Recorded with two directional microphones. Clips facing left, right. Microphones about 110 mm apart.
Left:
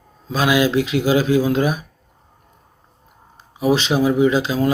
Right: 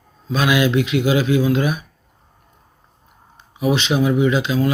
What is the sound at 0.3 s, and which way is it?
Speech, 30° left (ahead or behind).